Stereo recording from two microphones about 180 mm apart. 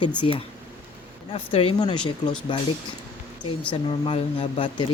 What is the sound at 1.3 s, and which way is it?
Speech, 30° left (ahead or behind).